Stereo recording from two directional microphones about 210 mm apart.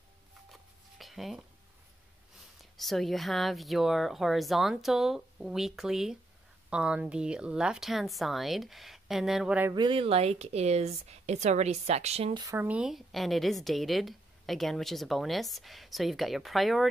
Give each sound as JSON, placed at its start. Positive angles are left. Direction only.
{"t": 0.5, "sound": "a sound", "side_deg": 0}
{"t": 2.6, "sound": "a woman's voice", "side_deg": 0}
{"t": 9.8, "sound": "speech", "side_deg": -25}
{"t": 12.4, "sound": "a woman's voice", "side_deg": -10}